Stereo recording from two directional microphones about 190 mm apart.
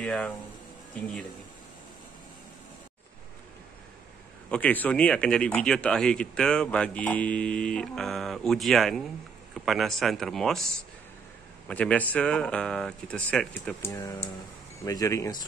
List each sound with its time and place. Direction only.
0.0 s speech: 5° left (ahead or behind)
4.5 s speech: 10° left (ahead or behind)